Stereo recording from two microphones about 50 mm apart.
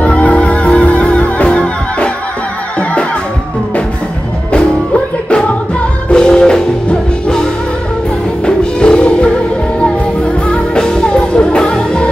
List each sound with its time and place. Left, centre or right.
0.0 s music: left
4.5 s music: left
8.5 s music: centre